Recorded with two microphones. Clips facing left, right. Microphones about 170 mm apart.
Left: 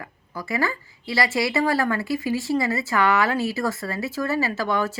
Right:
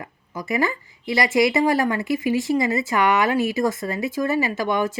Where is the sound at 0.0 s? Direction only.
20° right (ahead or behind).